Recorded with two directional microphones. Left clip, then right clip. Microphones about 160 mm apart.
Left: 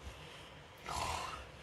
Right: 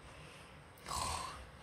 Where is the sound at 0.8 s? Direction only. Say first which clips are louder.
Left 1 dB; 20° left (ahead or behind).